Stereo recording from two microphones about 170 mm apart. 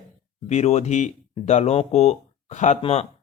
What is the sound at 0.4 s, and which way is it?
Speech, 40° left (ahead or behind).